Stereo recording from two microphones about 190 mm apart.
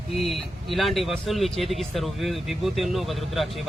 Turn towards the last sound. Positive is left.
turn(degrees=0)  # may be behind; listen again after turning